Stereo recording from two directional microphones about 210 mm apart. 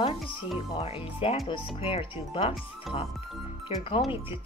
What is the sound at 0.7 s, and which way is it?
Speech, 25° left (ahead or behind).